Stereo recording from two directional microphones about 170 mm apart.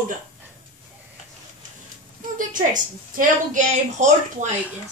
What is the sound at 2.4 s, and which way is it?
A woman's voice, 50° right (ahead or behind).